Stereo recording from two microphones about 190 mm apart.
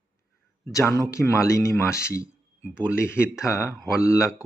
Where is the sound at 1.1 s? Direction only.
15° left (ahead or behind).